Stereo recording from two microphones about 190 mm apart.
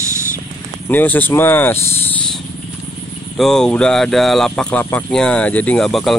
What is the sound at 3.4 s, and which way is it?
Speech, 5° left (ahead or behind).